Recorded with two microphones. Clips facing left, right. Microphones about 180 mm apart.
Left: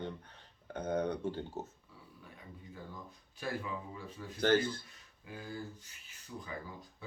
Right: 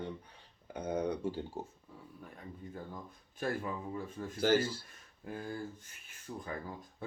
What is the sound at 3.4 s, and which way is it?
Speech, 50° right (ahead or behind).